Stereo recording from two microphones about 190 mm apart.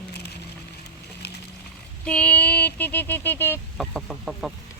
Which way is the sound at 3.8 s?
Centre (ahead or behind).